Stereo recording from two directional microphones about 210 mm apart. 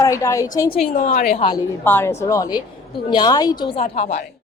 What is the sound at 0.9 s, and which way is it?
Speech, 40° left (ahead or behind).